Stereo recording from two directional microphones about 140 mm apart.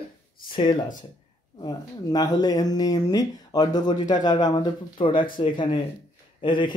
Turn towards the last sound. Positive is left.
turn(degrees=35)  # may be behind; listen again after turning